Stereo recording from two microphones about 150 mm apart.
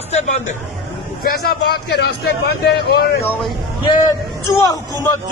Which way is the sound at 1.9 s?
90° left.